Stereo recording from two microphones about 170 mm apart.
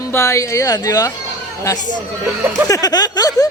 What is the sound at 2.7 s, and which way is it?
Speech, 20° left (ahead or behind).